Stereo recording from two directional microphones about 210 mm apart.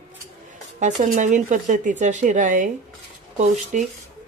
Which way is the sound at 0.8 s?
35° right (ahead or behind).